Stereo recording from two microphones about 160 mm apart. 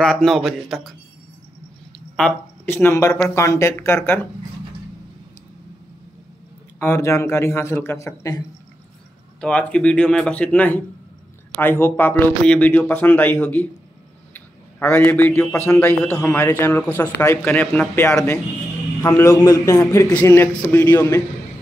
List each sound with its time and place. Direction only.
0.0 s speech: 5° left (ahead or behind)
2.1 s a man's voice: 10° left (ahead or behind)
6.8 s a man's voice: 15° left (ahead or behind)
9.4 s a man's voice: 5° left (ahead or behind)